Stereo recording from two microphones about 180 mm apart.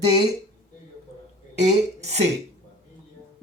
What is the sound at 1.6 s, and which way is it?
Speech, 40° right (ahead or behind).